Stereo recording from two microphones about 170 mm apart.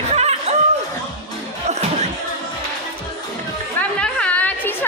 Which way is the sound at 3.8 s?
10° left (ahead or behind).